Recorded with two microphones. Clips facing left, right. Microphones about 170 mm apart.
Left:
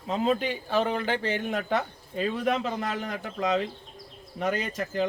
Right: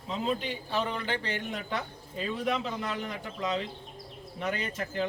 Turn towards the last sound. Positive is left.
turn(degrees=40)  # may be behind; listen again after turning